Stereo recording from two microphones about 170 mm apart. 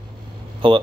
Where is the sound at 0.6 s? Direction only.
30° right (ahead or behind).